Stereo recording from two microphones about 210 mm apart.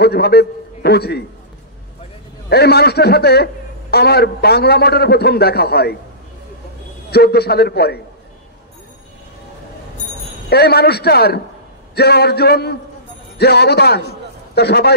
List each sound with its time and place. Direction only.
0.0 s a man's voice: 50° left (ahead or behind)
2.5 s a man's voice: 50° left (ahead or behind)
7.1 s a man's voice: 50° left (ahead or behind)
10.5 s a man's voice: 50° left (ahead or behind)